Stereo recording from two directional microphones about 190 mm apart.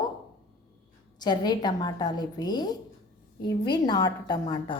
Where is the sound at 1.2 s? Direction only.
20° left (ahead or behind).